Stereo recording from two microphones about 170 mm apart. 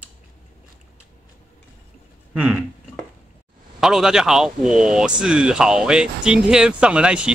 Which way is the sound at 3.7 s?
5° right (ahead or behind).